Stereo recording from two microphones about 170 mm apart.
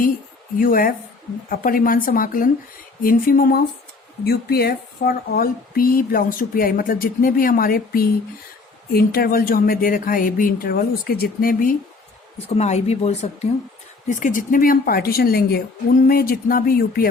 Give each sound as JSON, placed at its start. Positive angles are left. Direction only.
{"t": 0.6, "sound": "speech", "side_deg": 55}
{"t": 12.5, "sound": "speech", "side_deg": 40}